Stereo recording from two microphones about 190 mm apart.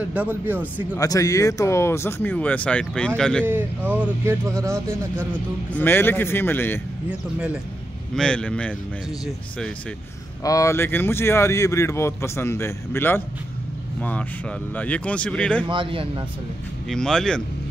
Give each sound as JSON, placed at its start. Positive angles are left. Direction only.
{"t": 0.1, "sound": "speech", "side_deg": -10}
{"t": 0.9, "sound": "speech", "side_deg": 20}
{"t": 3.4, "sound": "speech", "side_deg": -10}
{"t": 5.7, "sound": "speech", "side_deg": 10}
{"t": 7.1, "sound": "speech", "side_deg": -5}
{"t": 10.4, "sound": "speech", "side_deg": 15}
{"t": 14.7, "sound": "speech", "side_deg": 5}
{"t": 15.6, "sound": "a man's voice", "side_deg": -25}
{"t": 16.9, "sound": "speech", "side_deg": 5}